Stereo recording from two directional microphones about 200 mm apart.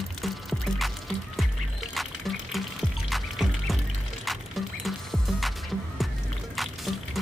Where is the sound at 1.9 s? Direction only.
Centre (ahead or behind).